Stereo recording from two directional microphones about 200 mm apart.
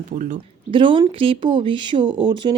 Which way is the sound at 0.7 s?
25° right (ahead or behind).